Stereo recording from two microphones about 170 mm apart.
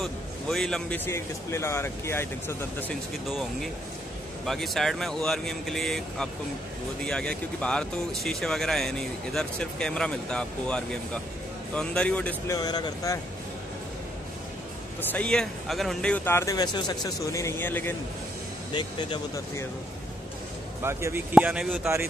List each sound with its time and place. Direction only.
0.0 s speech: centre (ahead or behind)
4.5 s speech: centre (ahead or behind)
12.5 s speech: 25° left (ahead or behind)
15.0 s speech: 5° left (ahead or behind)
18.7 s speech: 25° left (ahead or behind)
20.8 s speech: 15° right (ahead or behind)